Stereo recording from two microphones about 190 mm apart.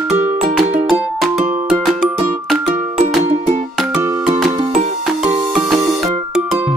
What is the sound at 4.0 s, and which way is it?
Music, 15° right (ahead or behind).